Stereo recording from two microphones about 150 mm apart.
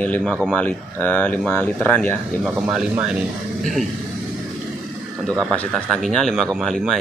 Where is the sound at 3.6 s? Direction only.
Centre (ahead or behind).